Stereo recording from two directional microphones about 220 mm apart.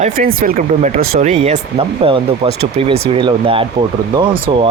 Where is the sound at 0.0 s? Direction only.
40° right (ahead or behind).